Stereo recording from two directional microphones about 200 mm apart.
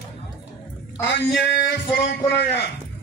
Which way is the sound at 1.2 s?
60° left (ahead or behind).